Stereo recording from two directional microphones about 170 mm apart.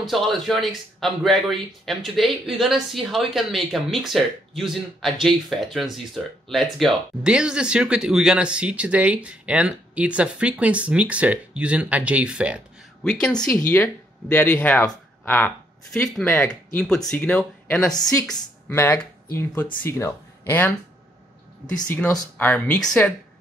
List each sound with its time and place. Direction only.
0.0 s speech: centre (ahead or behind); by 20.7 s 15° left (ahead or behind)
21.8 s speech: 10° left (ahead or behind)